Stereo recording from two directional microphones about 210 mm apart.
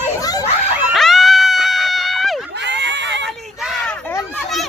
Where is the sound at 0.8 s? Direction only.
Centre (ahead or behind).